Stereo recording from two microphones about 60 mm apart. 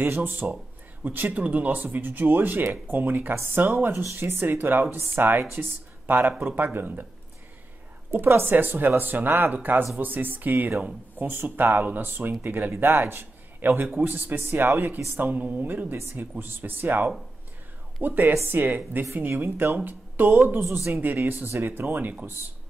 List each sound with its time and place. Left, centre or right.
0.0 s speech: right
8.1 s a man's voice: right